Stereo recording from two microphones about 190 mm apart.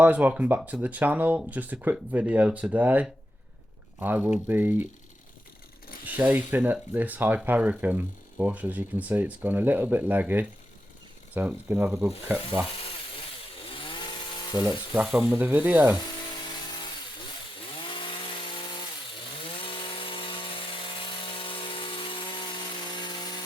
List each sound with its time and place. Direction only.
0.0 s speech: 10° right (ahead or behind)
6.1 s speech: 10° right (ahead or behind)
13.7 s chainsaw: 25° left (ahead or behind)
14.6 s speech: 10° right (ahead or behind)
17.8 s chainsaw: 25° left (ahead or behind)
19.6 s sawing: 25° left (ahead or behind)
21.3 s a sound: 30° left (ahead or behind)
23.0 s chainsaw: 25° left (ahead or behind)